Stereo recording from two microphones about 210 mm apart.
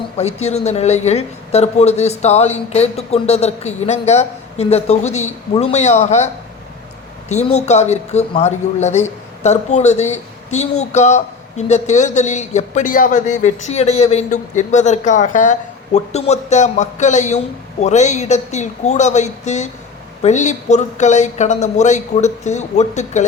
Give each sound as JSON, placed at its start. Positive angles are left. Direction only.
{"t": 0.2, "sound": "a man's voice", "side_deg": 30}